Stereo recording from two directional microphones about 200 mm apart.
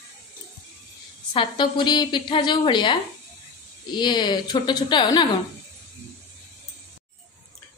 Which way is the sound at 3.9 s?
20° left (ahead or behind).